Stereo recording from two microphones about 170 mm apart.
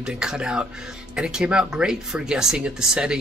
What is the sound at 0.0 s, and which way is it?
Speech, 5° right (ahead or behind).